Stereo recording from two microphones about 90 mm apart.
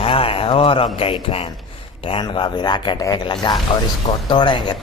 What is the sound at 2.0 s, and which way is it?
Speech, 75° left (ahead or behind).